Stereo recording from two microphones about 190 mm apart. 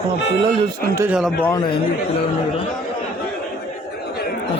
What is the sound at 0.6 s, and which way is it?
Speech, 15° right (ahead or behind).